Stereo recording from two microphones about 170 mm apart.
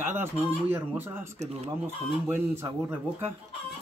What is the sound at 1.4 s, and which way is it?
Speech, 35° right (ahead or behind).